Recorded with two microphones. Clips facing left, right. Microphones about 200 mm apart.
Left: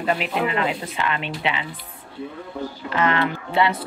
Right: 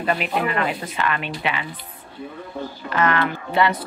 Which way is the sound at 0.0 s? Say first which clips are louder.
Even; 20° left (ahead or behind).